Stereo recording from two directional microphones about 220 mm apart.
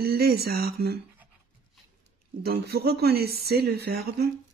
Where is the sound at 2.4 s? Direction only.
45° right (ahead or behind).